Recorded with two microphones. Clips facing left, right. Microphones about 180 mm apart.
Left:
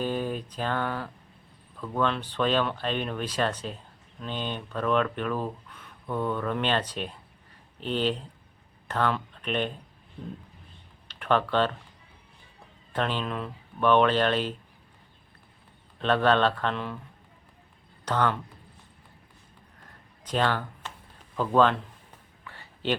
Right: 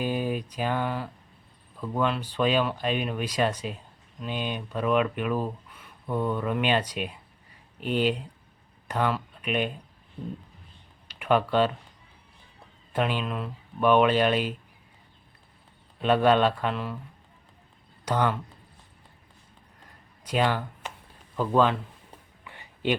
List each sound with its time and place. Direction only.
0.0 s speech: 10° right (ahead or behind)
11.1 s speech: 10° right (ahead or behind)
12.9 s speech: 10° right (ahead or behind)
16.0 s speech: 10° right (ahead or behind)
18.0 s speech: 10° right (ahead or behind)
20.2 s speech: 10° right (ahead or behind)
22.4 s a sound: 15° right (ahead or behind)